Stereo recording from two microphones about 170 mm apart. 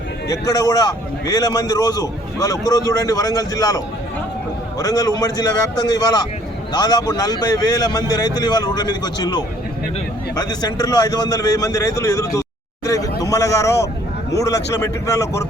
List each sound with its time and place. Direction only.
0.3 s a man's voice: 20° left (ahead or behind)
13.2 s a sound: 20° left (ahead or behind)
14.3 s a man's voice: 20° left (ahead or behind)